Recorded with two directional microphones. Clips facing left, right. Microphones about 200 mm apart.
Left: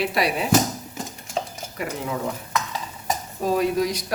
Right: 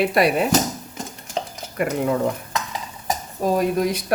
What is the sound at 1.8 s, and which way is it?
Frying, 55° right (ahead or behind).